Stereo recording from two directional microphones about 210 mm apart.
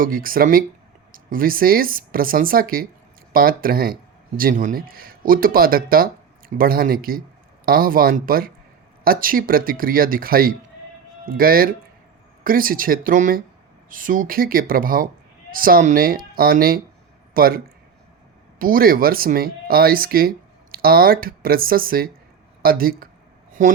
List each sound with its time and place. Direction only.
0.0 s speech: 45° right (ahead or behind)
18.6 s speech: 45° right (ahead or behind)